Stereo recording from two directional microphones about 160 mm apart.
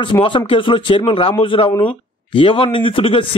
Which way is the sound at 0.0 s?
30° left (ahead or behind).